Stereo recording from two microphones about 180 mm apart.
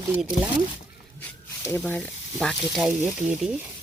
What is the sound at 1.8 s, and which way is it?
Speech, 5° left (ahead or behind).